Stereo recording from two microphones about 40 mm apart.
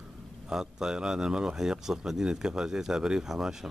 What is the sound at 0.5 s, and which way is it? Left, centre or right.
Speech, centre.